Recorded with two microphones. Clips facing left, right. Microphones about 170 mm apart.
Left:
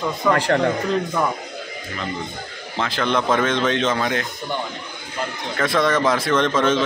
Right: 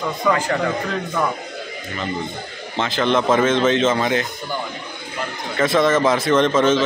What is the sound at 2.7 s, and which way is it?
A man's voice, centre (ahead or behind).